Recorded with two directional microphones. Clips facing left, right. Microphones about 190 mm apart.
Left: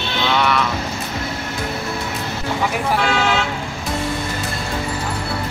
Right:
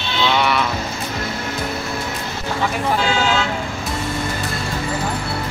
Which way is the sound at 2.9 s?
65° left (ahead or behind).